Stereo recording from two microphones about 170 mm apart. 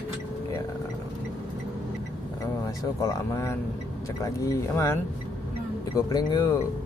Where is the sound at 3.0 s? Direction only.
20° left (ahead or behind).